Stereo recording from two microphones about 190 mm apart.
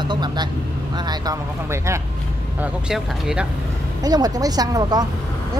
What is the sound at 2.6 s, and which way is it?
Speech, 5° right (ahead or behind).